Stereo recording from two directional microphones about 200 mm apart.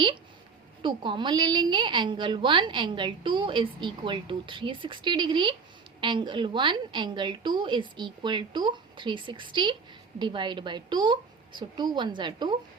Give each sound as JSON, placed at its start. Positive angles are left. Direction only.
{"t": 0.8, "sound": "a woman's voice", "side_deg": -25}